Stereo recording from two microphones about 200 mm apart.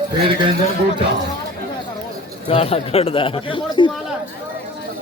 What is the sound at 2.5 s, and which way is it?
Speech, 30° left (ahead or behind).